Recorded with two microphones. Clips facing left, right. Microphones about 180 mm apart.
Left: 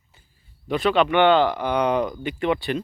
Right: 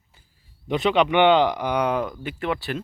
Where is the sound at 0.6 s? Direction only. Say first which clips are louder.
Even; 20° right (ahead or behind).